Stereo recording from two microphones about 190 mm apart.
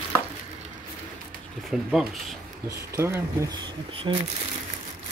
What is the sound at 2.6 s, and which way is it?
Speech, 15° right (ahead or behind).